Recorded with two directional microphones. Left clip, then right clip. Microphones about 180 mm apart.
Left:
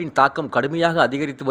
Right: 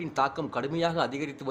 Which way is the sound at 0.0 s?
30° left (ahead or behind).